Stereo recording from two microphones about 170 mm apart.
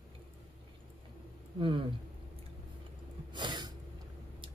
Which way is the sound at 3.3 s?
25° right (ahead or behind).